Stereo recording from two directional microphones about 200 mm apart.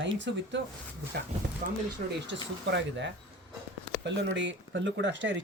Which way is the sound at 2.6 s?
60° right (ahead or behind).